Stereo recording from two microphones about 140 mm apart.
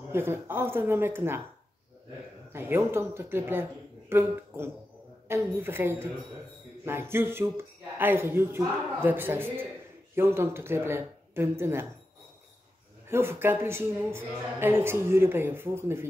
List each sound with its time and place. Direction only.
0.1 s a woman's voice: 15° right (ahead or behind)
2.5 s a woman's voice: 15° right (ahead or behind)
13.1 s a woman's voice: 15° right (ahead or behind)